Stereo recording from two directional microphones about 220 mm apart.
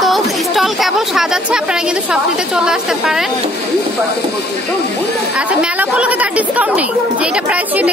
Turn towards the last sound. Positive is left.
turn(degrees=-5)  # may be behind; listen again after turning